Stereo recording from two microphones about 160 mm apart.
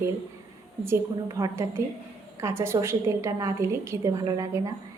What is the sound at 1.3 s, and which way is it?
A woman's voice, 20° right (ahead or behind).